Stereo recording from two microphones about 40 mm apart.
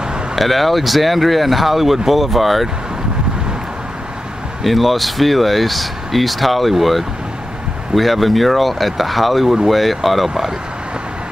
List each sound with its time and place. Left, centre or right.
0.4 s speech: centre
4.6 s speech: centre